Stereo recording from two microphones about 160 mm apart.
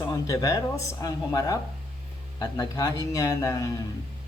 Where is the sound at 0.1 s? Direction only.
20° left (ahead or behind).